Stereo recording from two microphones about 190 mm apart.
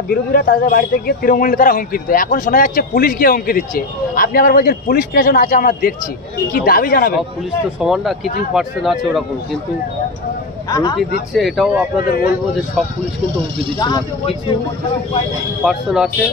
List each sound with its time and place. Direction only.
0.1 s a man's voice: 50° left (ahead or behind)
7.8 s speech: centre (ahead or behind)
10.7 s speech: 20° left (ahead or behind)
11.3 s speech: centre (ahead or behind)
12.0 s a man's voice: 50° left (ahead or behind)
13.7 s speech: 20° left (ahead or behind)
15.6 s speech: centre (ahead or behind)